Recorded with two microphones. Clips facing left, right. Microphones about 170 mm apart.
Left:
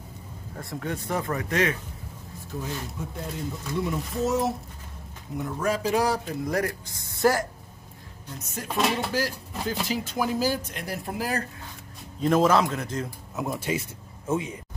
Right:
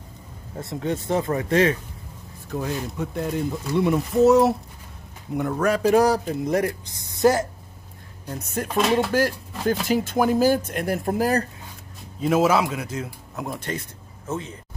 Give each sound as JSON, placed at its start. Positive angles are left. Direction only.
{"t": 0.6, "sound": "speech", "side_deg": -25}
{"t": 2.5, "sound": "speech", "side_deg": -70}
{"t": 6.0, "sound": "speech", "side_deg": -40}
{"t": 6.4, "sound": "speech", "side_deg": -20}
{"t": 8.6, "sound": "speech", "side_deg": -55}
{"t": 12.2, "sound": "a man's voice", "side_deg": -5}
{"t": 13.5, "sound": "speech", "side_deg": 10}